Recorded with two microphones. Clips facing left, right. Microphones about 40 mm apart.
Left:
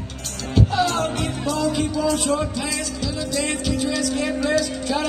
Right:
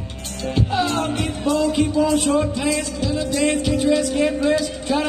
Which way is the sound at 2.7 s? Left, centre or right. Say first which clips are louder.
Right 5 dB; right.